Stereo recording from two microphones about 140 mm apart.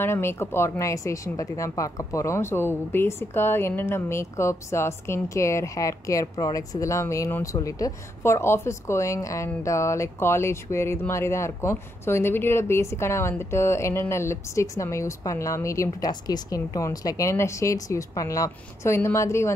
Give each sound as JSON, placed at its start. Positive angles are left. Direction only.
{"t": 0.0, "sound": "a woman's voice", "side_deg": 15}